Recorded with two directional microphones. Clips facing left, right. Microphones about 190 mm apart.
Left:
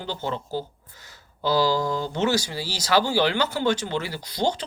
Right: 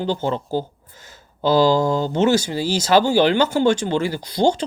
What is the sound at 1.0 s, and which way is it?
Speech, 20° right (ahead or behind).